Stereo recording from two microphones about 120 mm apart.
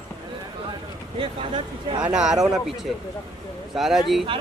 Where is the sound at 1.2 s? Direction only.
45° right (ahead or behind).